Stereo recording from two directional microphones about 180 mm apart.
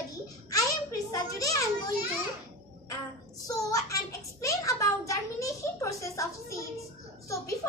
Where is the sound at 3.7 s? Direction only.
20° left (ahead or behind).